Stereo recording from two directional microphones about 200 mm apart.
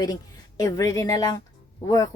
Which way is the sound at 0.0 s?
20° left (ahead or behind).